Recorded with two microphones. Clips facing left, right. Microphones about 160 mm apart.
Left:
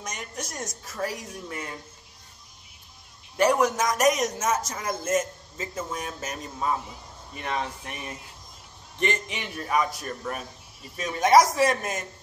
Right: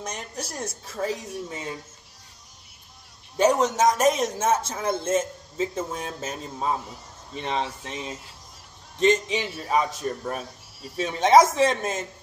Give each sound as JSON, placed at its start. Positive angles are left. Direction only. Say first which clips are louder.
{"t": 0.0, "sound": "a woman's voice", "louder": "right 2 dB", "side_deg": -30}
{"t": 3.3, "sound": "a man's voice", "louder": "right 2 dB", "side_deg": -20}